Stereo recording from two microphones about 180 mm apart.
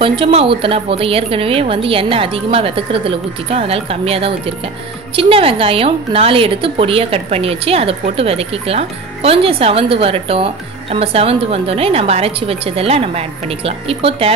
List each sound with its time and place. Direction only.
0.0 s speech: 30° right (ahead or behind)